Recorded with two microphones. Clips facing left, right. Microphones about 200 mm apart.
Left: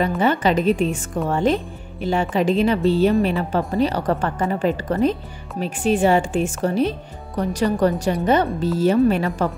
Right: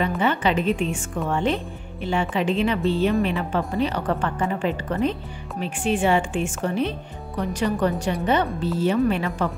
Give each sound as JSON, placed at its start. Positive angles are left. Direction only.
{"t": 0.2, "sound": "speech", "side_deg": 40}